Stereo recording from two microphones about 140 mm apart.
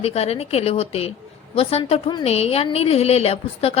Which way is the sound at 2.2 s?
45° left (ahead or behind).